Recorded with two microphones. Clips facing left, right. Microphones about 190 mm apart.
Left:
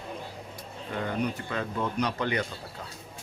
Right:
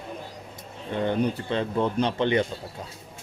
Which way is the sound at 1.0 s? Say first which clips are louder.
Right 6 dB; 30° right (ahead or behind).